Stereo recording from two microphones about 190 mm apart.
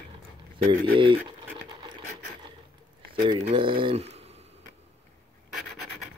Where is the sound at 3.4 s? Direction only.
30° right (ahead or behind).